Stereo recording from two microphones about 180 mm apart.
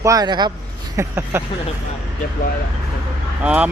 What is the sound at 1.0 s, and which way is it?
Speech, 15° right (ahead or behind).